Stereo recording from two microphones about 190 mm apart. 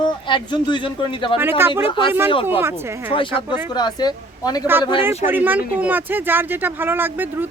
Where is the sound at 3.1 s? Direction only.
25° left (ahead or behind).